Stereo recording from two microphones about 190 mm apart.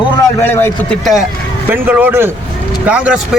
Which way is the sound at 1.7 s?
10° right (ahead or behind).